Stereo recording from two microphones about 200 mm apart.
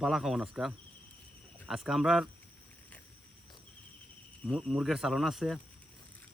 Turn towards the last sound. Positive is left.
turn(degrees=0)  # may be behind; listen again after turning